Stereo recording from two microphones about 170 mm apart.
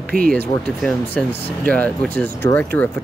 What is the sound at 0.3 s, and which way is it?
Speech, 5° left (ahead or behind).